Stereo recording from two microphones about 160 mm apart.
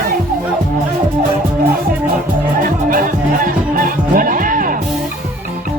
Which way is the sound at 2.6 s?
60° right (ahead or behind).